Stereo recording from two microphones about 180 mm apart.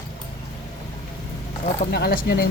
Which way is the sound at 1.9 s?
60° left (ahead or behind).